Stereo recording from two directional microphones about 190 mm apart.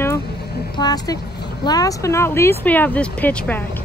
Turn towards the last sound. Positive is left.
turn(degrees=10)  # may be behind; listen again after turning